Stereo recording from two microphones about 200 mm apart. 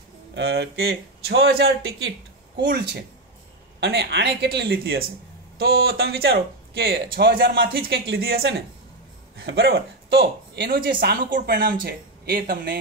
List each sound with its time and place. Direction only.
0.3 s speech: 55° right (ahead or behind)
3.8 s speech: 55° right (ahead or behind)